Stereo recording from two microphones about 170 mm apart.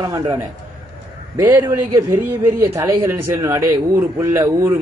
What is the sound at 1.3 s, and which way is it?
Speech, 15° right (ahead or behind).